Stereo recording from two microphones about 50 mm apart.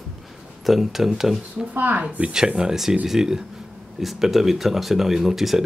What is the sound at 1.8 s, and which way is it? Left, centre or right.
Speech, right.